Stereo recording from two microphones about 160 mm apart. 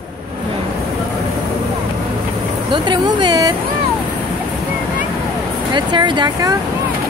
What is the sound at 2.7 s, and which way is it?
Speech, 30° right (ahead or behind).